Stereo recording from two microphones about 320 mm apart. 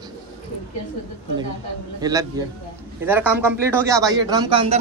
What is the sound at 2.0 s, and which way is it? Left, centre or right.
A man's voice, centre.